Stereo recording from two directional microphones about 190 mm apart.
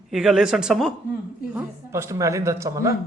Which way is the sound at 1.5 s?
10° right (ahead or behind).